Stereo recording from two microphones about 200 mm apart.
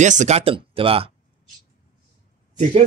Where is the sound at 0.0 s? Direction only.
35° right (ahead or behind).